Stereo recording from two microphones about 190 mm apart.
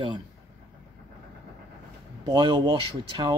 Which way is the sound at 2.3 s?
20° right (ahead or behind).